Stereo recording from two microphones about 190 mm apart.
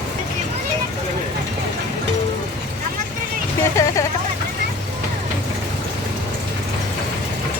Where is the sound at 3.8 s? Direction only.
15° left (ahead or behind).